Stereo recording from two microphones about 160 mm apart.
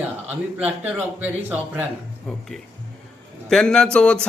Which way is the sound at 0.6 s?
10° right (ahead or behind).